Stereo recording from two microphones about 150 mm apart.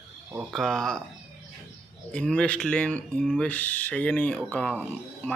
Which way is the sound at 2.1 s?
5° left (ahead or behind).